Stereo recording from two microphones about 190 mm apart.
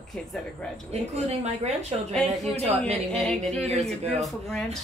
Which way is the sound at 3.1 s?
5° left (ahead or behind).